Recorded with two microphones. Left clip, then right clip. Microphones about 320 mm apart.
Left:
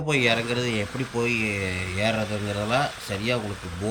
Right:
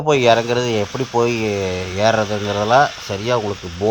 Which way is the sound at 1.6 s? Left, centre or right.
Centre.